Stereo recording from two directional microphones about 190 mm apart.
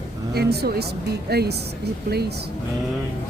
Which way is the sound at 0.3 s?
55° right (ahead or behind).